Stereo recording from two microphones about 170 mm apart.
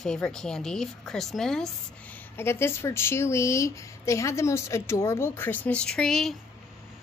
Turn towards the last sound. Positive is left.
turn(degrees=0)  # may be behind; listen again after turning